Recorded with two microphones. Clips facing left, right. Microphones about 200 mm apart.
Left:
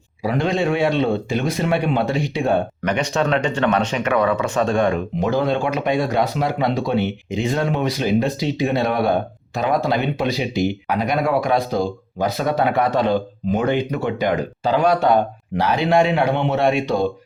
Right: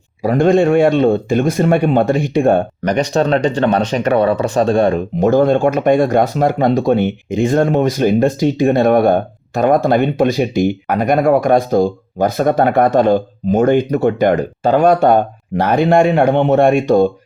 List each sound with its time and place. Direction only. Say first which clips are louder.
0.2 s speech: right 8 dB; 50° right (ahead or behind)
5.3 s speech: right 8 dB; 45° right (ahead or behind)